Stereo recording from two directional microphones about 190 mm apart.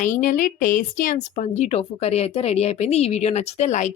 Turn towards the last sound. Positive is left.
turn(degrees=40)  # may be behind; listen again after turning